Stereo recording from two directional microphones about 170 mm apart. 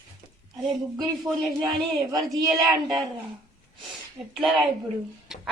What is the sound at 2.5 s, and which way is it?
Speech, 20° right (ahead or behind).